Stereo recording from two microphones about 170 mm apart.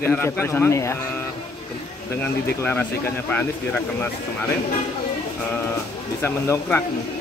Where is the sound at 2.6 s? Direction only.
10° left (ahead or behind).